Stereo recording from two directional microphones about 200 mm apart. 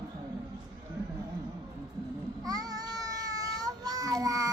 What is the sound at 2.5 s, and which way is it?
Child singing, 20° right (ahead or behind).